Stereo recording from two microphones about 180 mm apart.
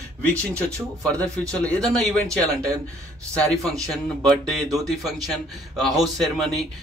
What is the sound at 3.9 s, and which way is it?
Speech, centre (ahead or behind).